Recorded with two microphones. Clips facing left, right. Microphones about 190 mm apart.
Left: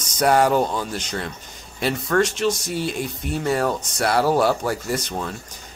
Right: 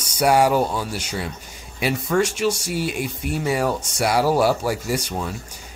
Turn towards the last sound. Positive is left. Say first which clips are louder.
# right 1 dB
turn(degrees=-10)  # may be behind; listen again after turning